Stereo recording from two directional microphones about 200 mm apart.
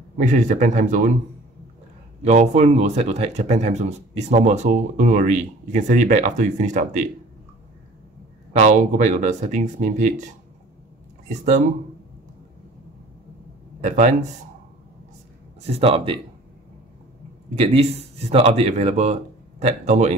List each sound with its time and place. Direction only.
0.2 s speech: 40° right (ahead or behind)
2.2 s speech: 35° right (ahead or behind)
8.5 s speech: 35° right (ahead or behind)
13.7 s speech: 35° right (ahead or behind)
15.6 s a man's voice: 30° right (ahead or behind)
17.6 s speech: 30° right (ahead or behind)